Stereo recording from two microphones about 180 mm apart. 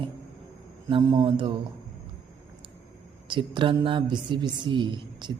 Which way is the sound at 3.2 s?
25° right (ahead or behind).